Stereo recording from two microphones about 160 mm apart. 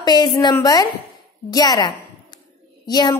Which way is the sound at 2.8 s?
25° left (ahead or behind).